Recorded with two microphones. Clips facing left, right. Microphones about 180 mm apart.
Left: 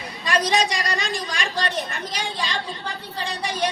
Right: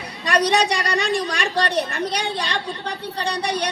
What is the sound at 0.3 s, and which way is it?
A woman's voice, 60° right (ahead or behind).